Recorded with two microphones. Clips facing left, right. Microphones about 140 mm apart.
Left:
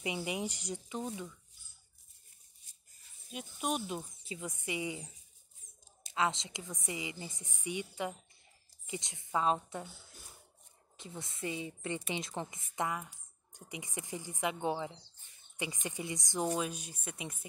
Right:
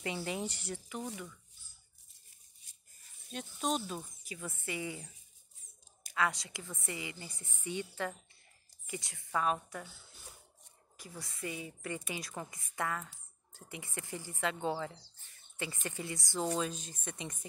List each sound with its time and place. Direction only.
0.0 s speech: 15° left (ahead or behind)
3.3 s a woman's voice: 10° left (ahead or behind); by 9.8 s 25° left (ahead or behind)
11.0 s a woman's voice: 25° left (ahead or behind); by 17.5 s 5° left (ahead or behind)